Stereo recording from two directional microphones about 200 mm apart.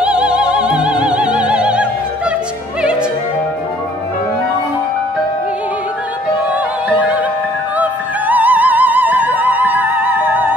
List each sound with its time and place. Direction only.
0.0 s opera: 5° right (ahead or behind)
7.7 s music: 10° right (ahead or behind)